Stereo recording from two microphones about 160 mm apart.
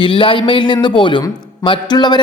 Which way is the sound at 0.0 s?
30° left (ahead or behind).